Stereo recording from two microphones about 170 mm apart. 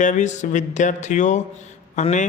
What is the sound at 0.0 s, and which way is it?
Speech, 45° left (ahead or behind).